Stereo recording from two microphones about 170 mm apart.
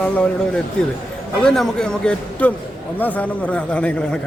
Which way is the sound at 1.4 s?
Centre (ahead or behind).